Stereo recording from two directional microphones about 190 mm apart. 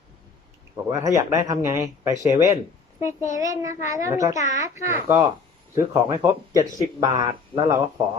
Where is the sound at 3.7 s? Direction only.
40° left (ahead or behind).